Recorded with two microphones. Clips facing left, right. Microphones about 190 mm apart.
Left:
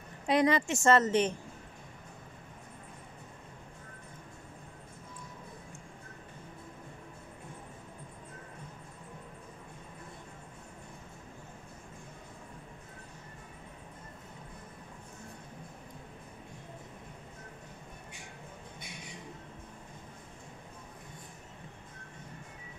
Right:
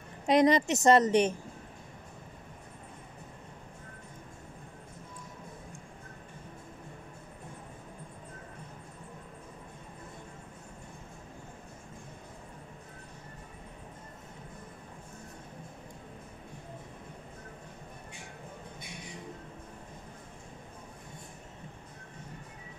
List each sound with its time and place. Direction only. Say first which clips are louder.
0.3 s a woman's voice: right 3 dB; 20° right (ahead or behind)